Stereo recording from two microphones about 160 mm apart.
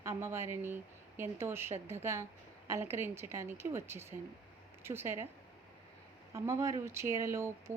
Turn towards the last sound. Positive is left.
turn(degrees=-15)  # may be behind; listen again after turning